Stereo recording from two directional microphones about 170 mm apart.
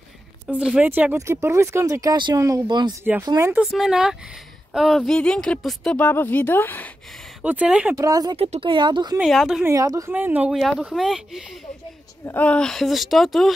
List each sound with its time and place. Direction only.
0.5 s speech: 5° right (ahead or behind)
3.6 s speech: centre (ahead or behind)
7.4 s speech: 5° right (ahead or behind)
7.9 s speech: 20° right (ahead or behind)
8.4 s speech: 35° right (ahead or behind)
9.2 s speech: centre (ahead or behind)
9.7 s speech: 20° right (ahead or behind); by 11.4 s centre (ahead or behind)
12.3 s speech: 10° left (ahead or behind)